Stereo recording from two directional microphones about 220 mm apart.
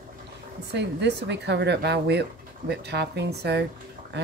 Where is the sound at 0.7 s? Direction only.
50° right (ahead or behind).